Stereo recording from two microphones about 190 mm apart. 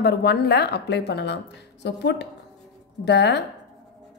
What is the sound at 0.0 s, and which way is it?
A woman's voice, 60° left (ahead or behind).